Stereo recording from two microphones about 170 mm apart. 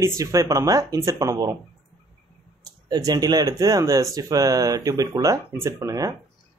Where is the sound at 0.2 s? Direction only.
20° right (ahead or behind).